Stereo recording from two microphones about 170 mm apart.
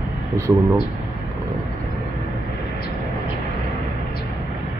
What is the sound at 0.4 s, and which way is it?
Speech, 15° right (ahead or behind).